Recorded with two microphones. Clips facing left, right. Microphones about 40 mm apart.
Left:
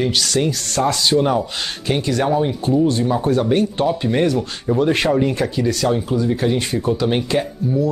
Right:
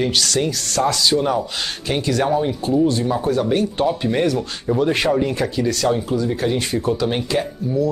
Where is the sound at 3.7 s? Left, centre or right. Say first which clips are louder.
Left 1 dB; centre.